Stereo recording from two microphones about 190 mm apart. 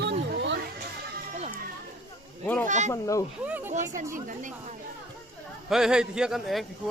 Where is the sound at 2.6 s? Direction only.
40° right (ahead or behind).